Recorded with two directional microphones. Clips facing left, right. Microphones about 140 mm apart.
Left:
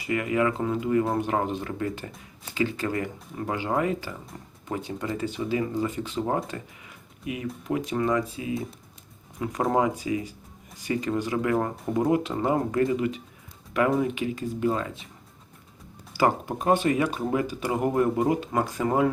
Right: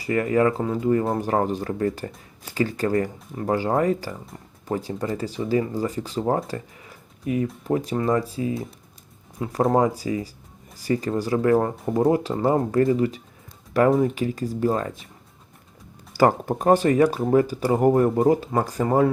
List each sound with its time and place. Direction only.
0.0 s speech: 40° right (ahead or behind)
6.5 s a sound: 35° right (ahead or behind)
7.7 s speech: 35° right (ahead or behind)
16.1 s speech: 40° right (ahead or behind)